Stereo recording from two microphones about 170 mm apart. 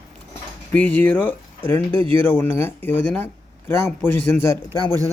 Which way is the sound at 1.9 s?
30° right (ahead or behind).